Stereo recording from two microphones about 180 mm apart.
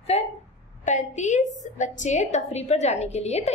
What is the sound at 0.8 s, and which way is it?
A woman's voice, 40° left (ahead or behind).